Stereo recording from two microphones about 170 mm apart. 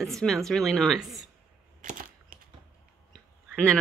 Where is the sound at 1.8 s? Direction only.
50° right (ahead or behind).